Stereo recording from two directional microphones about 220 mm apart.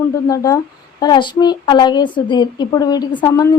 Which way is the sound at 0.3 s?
15° left (ahead or behind).